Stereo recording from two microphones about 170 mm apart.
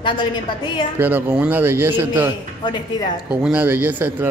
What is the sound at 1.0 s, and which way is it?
A man's voice, 10° right (ahead or behind).